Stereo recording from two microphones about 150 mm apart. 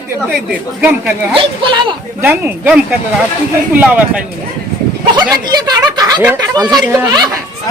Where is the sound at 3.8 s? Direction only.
10° right (ahead or behind).